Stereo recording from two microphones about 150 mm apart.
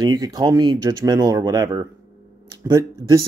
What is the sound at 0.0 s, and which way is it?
Speech, 25° right (ahead or behind).